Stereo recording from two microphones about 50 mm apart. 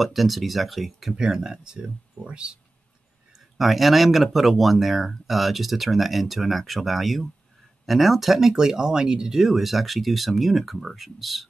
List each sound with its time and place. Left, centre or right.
0.0 s speech: centre
1.1 s speech: centre
3.5 s speech: centre